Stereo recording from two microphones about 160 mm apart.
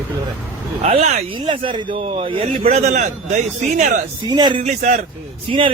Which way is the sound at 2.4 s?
45° right (ahead or behind).